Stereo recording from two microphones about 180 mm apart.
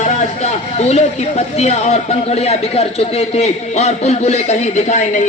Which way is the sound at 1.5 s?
35° left (ahead or behind).